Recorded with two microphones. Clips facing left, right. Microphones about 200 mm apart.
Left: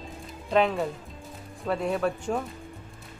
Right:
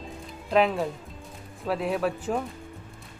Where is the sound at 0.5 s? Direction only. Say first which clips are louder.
Right 1 dB; centre (ahead or behind).